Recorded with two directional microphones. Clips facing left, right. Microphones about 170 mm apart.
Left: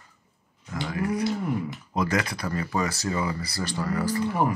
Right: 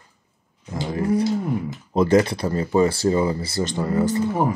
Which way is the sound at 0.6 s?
25° right (ahead or behind).